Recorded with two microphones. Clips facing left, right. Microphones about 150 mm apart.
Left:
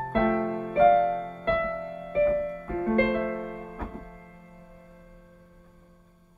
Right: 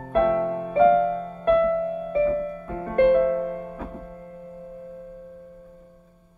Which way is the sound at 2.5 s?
25° right (ahead or behind).